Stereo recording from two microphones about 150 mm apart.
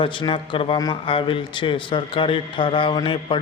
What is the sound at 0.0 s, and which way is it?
A man's voice, 35° left (ahead or behind).